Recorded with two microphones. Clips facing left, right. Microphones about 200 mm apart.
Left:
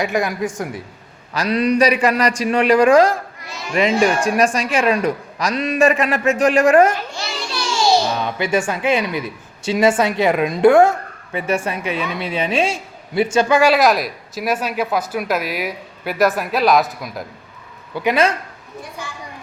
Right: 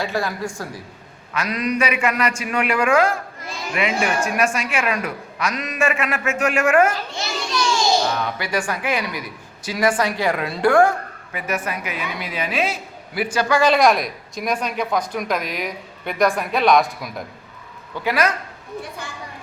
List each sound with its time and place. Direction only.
0.0 s a woman's voice: 15° left (ahead or behind)
1.3 s a woman's voice: 35° left (ahead or behind)
8.1 s a woman's voice: 20° left (ahead or behind)
13.6 s speech: 5° left (ahead or behind)
17.9 s a woman's voice: 20° left (ahead or behind)